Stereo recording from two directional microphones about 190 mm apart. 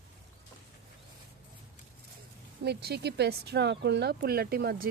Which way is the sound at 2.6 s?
60° right (ahead or behind).